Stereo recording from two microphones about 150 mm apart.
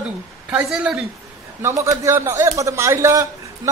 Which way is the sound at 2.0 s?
15° right (ahead or behind).